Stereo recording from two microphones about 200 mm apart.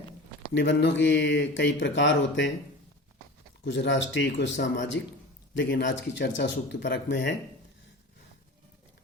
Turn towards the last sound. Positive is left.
turn(degrees=60)  # may be behind; listen again after turning